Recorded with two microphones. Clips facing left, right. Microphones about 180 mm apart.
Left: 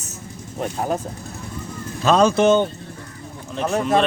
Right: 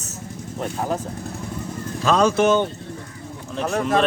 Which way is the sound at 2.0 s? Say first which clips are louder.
Left 2 dB; 30° left (ahead or behind).